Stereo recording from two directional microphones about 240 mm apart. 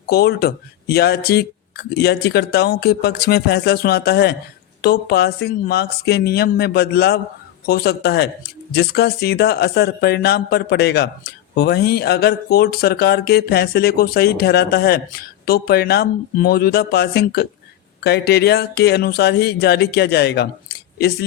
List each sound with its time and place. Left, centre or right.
0.1 s speech: left